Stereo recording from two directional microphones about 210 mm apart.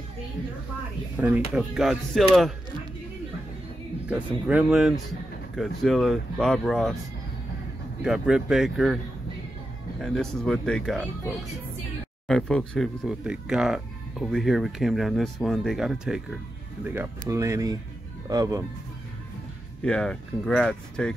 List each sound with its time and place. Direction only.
1.1 s speech: centre (ahead or behind)
4.1 s speech: 5° right (ahead or behind)
8.0 s speech: centre (ahead or behind)
12.3 s speech: centre (ahead or behind); by 18.7 s 15° right (ahead or behind)
19.8 s speech: 5° left (ahead or behind)